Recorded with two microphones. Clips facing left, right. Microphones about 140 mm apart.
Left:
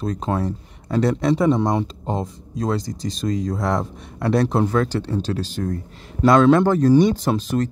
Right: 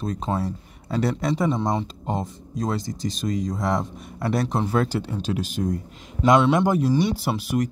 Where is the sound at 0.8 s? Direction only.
50° left (ahead or behind).